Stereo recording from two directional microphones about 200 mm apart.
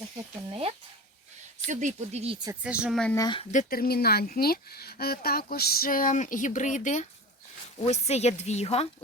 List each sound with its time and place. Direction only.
1.6 s speech: 35° right (ahead or behind)
2.5 s a woman's voice: 5° right (ahead or behind)
3.2 s speech: 20° left (ahead or behind)
3.5 s a woman's voice: 45° left (ahead or behind)